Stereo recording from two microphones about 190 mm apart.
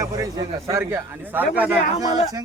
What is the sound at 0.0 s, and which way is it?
A man's voice, 15° right (ahead or behind).